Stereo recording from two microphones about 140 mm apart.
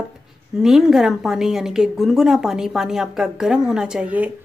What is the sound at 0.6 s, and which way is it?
A woman's voice, 5° right (ahead or behind).